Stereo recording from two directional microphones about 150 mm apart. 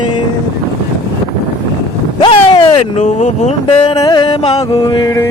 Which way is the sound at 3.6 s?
30° left (ahead or behind).